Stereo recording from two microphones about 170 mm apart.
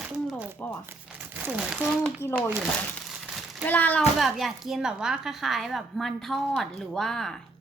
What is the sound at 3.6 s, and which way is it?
A child's voice, 10° left (ahead or behind).